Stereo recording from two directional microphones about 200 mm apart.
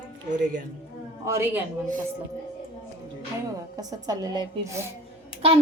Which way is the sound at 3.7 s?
20° right (ahead or behind).